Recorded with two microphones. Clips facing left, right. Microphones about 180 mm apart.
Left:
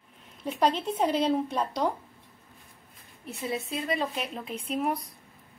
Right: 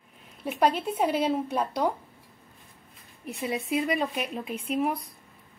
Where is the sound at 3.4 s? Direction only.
15° right (ahead or behind).